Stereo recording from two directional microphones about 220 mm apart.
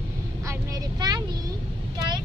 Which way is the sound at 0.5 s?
15° right (ahead or behind).